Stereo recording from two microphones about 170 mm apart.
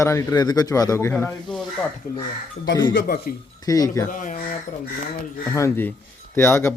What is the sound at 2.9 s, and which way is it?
Speech, 60° left (ahead or behind).